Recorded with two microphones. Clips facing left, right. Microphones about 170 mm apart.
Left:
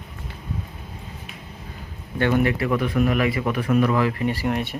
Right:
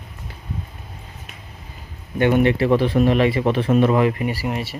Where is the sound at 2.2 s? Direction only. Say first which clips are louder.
Right 4 dB; 20° right (ahead or behind); by 4.8 s centre (ahead or behind).